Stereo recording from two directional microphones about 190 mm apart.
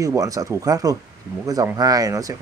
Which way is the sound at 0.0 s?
20° right (ahead or behind).